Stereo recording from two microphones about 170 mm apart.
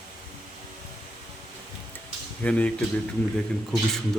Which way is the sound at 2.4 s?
10° left (ahead or behind).